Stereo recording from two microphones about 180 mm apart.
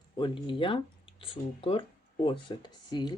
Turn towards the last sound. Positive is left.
turn(degrees=25)  # may be behind; listen again after turning